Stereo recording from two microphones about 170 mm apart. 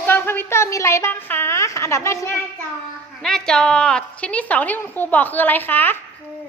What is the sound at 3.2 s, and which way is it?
A woman's voice, 5° left (ahead or behind).